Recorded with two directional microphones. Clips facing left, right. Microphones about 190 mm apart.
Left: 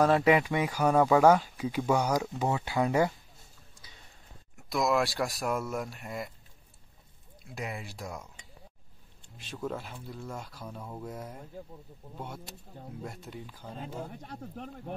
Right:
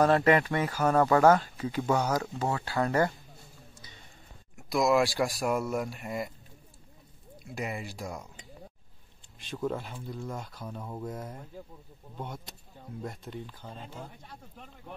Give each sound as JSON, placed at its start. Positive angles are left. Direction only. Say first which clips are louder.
{"t": 0.0, "sound": "speech", "louder": "even", "side_deg": 5}
{"t": 4.6, "sound": "speech", "louder": "right 3 dB", "side_deg": 0}
{"t": 7.5, "sound": "speech", "louder": "right 3 dB", "side_deg": 0}
{"t": 9.5, "sound": "speech", "louder": "right 3 dB", "side_deg": 0}
{"t": 10.8, "sound": "speech", "louder": "right 3 dB", "side_deg": -5}
{"t": 11.1, "sound": "speech", "louder": "right 2 dB", "side_deg": 5}
{"t": 14.3, "sound": "speech", "louder": "left 8 dB", "side_deg": 50}